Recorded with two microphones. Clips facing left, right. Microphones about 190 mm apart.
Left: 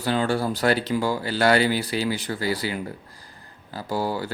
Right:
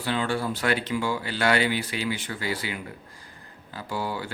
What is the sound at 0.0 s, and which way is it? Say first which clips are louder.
Speech: left 4 dB; 40° left (ahead or behind).